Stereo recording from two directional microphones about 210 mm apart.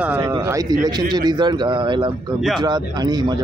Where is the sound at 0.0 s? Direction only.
10° right (ahead or behind).